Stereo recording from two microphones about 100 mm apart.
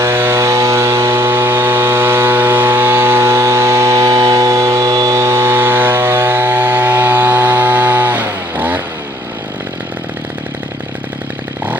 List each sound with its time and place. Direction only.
0.0 s chainsaw: 25° right (ahead or behind)